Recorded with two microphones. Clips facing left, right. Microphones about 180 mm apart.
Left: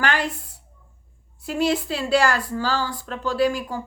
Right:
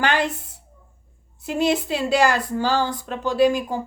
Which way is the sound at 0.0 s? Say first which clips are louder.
Right 2 dB; 20° right (ahead or behind).